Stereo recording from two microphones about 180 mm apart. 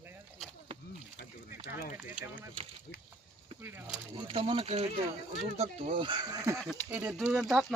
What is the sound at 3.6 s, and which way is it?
Speech, 10° right (ahead or behind).